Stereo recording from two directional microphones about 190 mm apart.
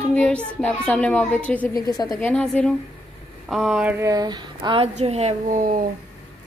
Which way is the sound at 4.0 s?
20° right (ahead or behind).